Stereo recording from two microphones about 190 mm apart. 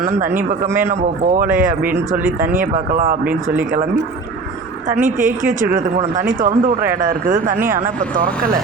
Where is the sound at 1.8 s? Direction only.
10° right (ahead or behind).